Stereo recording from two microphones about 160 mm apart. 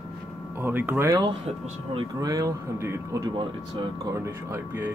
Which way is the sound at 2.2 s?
20° right (ahead or behind).